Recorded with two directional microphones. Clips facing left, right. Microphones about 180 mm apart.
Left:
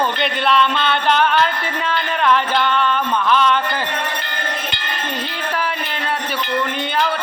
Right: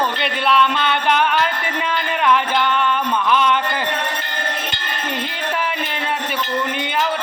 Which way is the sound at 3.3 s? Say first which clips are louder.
Left 1 dB; 15° right (ahead or behind).